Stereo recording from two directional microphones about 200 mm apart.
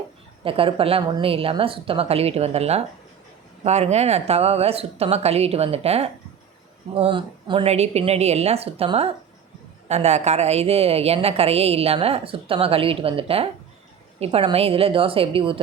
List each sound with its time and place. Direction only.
0.4 s a woman's voice: 25° right (ahead or behind)